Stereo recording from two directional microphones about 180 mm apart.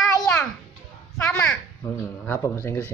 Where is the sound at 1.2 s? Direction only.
5° left (ahead or behind).